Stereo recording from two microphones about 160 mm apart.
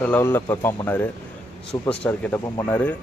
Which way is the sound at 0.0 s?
10° left (ahead or behind).